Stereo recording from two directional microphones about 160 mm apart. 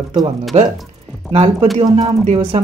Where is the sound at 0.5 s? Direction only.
40° right (ahead or behind).